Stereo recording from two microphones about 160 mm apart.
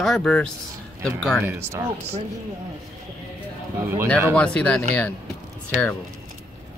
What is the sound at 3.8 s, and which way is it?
Speech, 15° right (ahead or behind).